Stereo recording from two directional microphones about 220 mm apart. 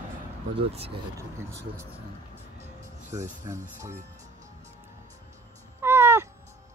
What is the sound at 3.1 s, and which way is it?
Speech, 15° right (ahead or behind).